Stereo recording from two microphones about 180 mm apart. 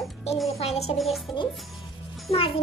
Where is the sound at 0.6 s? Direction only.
35° left (ahead or behind).